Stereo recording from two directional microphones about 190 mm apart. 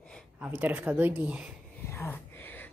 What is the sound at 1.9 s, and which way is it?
Gasp, 10° left (ahead or behind).